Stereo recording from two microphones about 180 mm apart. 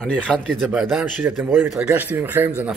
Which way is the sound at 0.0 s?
5° left (ahead or behind).